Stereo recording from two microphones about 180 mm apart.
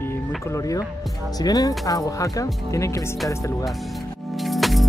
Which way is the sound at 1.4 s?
20° left (ahead or behind).